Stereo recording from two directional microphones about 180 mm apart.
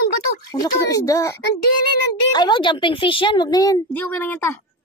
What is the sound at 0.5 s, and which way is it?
A woman's voice, 20° left (ahead or behind).